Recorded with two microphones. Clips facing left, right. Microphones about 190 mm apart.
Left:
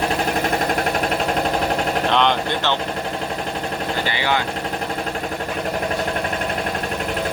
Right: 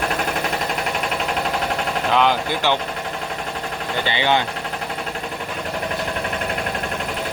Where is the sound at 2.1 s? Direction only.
5° right (ahead or behind).